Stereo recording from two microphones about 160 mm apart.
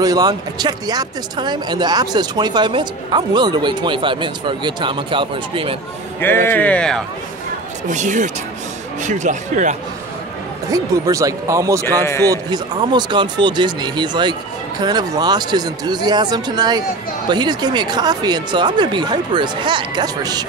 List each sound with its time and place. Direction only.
0.0 s speech: 25° right (ahead or behind)
6.2 s a man's voice: 15° left (ahead or behind)
7.9 s speech: 50° right (ahead or behind)
10.7 s speech: 20° right (ahead or behind)
12.0 s a man's voice: 15° left (ahead or behind)
12.3 s speech: 25° right (ahead or behind)